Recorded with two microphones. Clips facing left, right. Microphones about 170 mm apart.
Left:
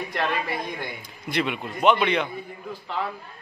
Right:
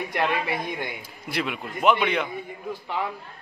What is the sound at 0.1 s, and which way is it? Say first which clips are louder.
Speech: right 2 dB; 15° right (ahead or behind).